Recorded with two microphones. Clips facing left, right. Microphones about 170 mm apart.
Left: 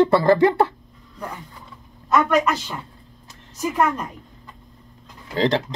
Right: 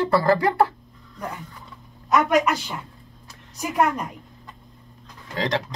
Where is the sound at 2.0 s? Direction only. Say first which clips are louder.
Left 1 dB; 10° right (ahead or behind).